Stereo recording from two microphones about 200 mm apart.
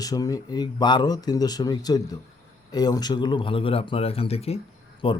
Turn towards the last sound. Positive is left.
turn(degrees=30)  # may be behind; listen again after turning